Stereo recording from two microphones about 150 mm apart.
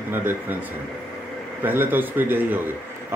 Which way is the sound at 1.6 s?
15° right (ahead or behind).